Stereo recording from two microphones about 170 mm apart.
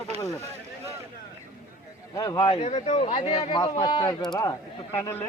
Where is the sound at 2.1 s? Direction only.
20° left (ahead or behind).